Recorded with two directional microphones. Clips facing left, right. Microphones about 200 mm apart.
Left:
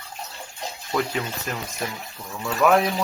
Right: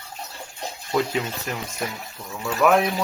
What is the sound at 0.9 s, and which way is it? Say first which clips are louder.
Speech: right 2 dB; 20° right (ahead or behind).